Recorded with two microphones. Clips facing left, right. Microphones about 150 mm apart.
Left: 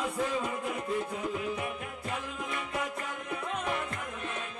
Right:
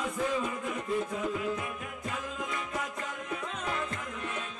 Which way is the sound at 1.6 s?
30° left (ahead or behind).